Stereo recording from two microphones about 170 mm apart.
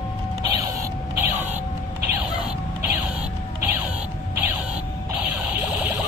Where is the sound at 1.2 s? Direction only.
10° right (ahead or behind).